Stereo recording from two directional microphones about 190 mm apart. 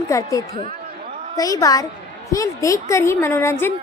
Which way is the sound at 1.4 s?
20° left (ahead or behind).